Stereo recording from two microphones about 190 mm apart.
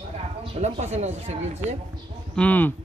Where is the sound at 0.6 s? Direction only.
35° right (ahead or behind).